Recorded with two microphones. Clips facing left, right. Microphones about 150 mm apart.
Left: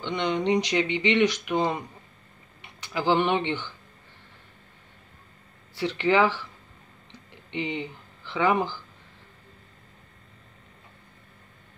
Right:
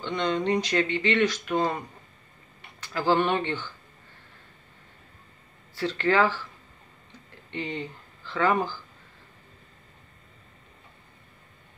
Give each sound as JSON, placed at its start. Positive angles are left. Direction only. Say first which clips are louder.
{"t": 0.0, "sound": "speech", "louder": "even", "side_deg": 15}
{"t": 5.8, "sound": "speech", "louder": "left 1 dB", "side_deg": 15}
{"t": 7.5, "sound": "speech", "louder": "left 2 dB", "side_deg": 15}